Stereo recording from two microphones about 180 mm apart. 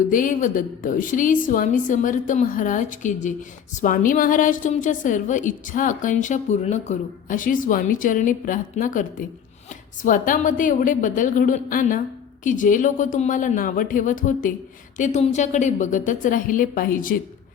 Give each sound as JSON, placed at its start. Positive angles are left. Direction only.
{"t": 0.1, "sound": "a woman's voice", "side_deg": 45}